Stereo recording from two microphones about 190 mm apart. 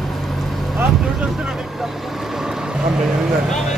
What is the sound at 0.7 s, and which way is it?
Speech, 5° right (ahead or behind).